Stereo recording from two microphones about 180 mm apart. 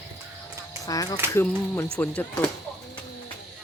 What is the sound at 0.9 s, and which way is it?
Speech, 20° left (ahead or behind).